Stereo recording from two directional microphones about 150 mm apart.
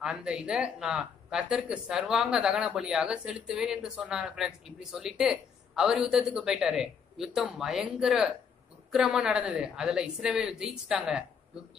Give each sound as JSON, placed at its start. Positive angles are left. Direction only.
{"t": 0.0, "sound": "speech", "side_deg": -5}